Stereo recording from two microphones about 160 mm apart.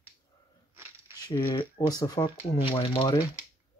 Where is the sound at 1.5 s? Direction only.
30° left (ahead or behind).